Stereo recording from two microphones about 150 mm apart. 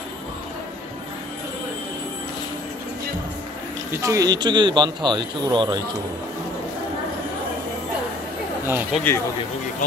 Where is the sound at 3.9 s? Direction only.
20° right (ahead or behind).